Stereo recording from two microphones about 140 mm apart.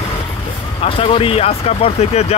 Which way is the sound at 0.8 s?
40° left (ahead or behind).